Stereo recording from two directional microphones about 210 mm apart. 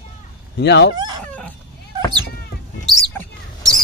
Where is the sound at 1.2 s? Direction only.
5° left (ahead or behind).